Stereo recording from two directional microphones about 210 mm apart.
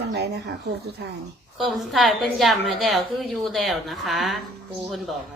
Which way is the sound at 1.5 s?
Centre (ahead or behind).